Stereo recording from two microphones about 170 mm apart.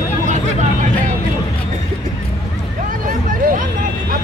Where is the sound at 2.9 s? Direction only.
55° right (ahead or behind).